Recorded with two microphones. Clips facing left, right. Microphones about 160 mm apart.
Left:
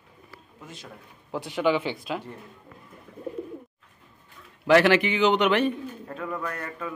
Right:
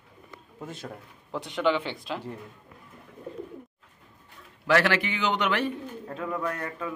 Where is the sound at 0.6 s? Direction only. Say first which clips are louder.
Right 6 dB; 55° right (ahead or behind).